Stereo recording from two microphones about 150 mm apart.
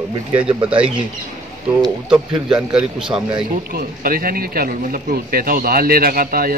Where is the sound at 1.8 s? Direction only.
5° right (ahead or behind).